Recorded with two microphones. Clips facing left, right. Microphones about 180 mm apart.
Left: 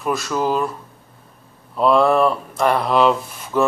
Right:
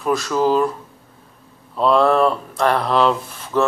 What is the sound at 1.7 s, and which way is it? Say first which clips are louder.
Speech: even; 5° left (ahead or behind).